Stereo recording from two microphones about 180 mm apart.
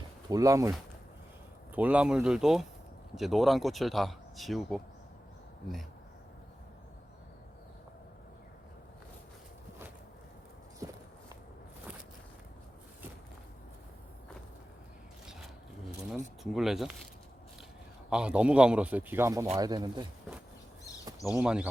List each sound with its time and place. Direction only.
0.3 s a man's voice: 20° right (ahead or behind)
1.7 s speech: 10° right (ahead or behind)
10.8 s walk: 20° right (ahead or behind)
16.1 s speech: centre (ahead or behind)
18.1 s a man's voice: 5° right (ahead or behind); by 20.1 s 20° right (ahead or behind)
21.2 s speech: 5° right (ahead or behind)